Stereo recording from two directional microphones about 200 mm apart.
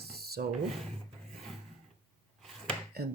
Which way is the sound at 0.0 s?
50° right (ahead or behind).